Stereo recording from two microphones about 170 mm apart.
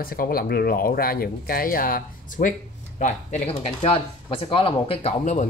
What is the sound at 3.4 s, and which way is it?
Speech, 35° left (ahead or behind).